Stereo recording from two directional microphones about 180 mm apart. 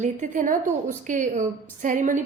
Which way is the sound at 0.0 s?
45° right (ahead or behind).